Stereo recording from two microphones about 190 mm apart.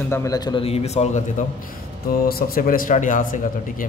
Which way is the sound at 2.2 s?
50° left (ahead or behind).